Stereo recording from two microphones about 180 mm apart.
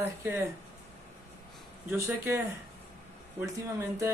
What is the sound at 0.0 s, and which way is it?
Speech, 15° right (ahead or behind).